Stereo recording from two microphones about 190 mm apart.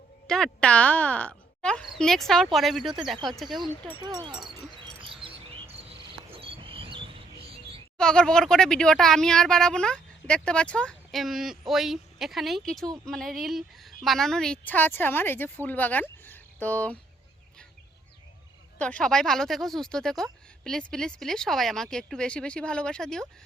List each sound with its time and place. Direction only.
0.3 s speech: 5° left (ahead or behind)
4.0 s speech: 25° right (ahead or behind)
5.0 s bird: 30° right (ahead or behind)
6.3 s a sound: 30° right (ahead or behind)
7.9 s a woman's voice: 5° left (ahead or behind)
18.8 s speech: 5° left (ahead or behind)